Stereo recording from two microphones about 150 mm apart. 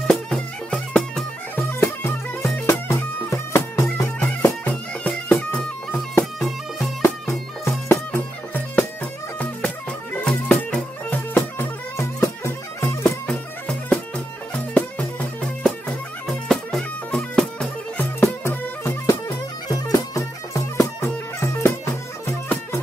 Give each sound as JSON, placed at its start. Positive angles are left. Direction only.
{"t": 0.0, "sound": "music", "side_deg": 5}
{"t": 10.2, "sound": "music", "side_deg": 5}